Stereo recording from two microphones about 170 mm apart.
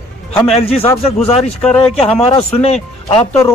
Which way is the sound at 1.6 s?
5° left (ahead or behind).